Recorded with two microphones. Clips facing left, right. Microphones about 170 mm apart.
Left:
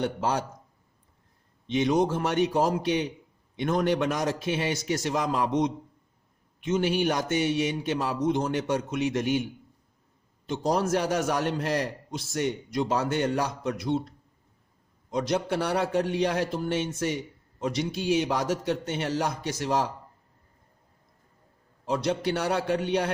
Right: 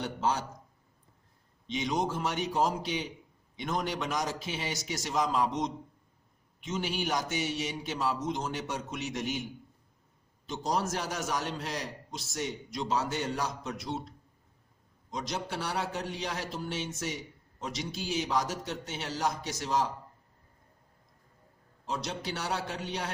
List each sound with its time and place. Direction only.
0.0 s a man's voice: 60° left (ahead or behind)
1.6 s a man's voice: 55° left (ahead or behind)
6.7 s a man's voice: 55° left (ahead or behind)
15.1 s a man's voice: 60° left (ahead or behind)
21.8 s a man's voice: 60° left (ahead or behind)